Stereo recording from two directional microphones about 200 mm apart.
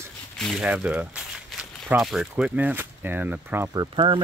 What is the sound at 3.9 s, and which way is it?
Speech, 25° right (ahead or behind).